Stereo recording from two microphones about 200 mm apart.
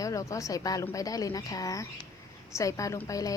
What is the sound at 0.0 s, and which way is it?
Speech, 15° left (ahead or behind).